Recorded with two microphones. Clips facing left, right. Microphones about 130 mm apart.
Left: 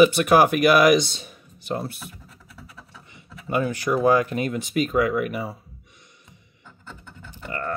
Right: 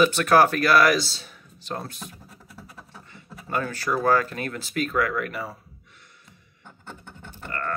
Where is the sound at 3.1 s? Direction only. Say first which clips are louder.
Left 3 dB; 15° left (ahead or behind).